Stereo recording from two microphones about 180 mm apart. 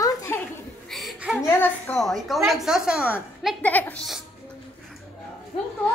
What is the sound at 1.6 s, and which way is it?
A woman's voice, 5° left (ahead or behind).